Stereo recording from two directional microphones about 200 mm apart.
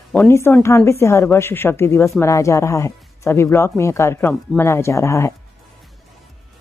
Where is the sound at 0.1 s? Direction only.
10° left (ahead or behind).